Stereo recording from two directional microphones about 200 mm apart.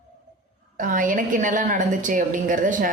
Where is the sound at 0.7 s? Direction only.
45° right (ahead or behind).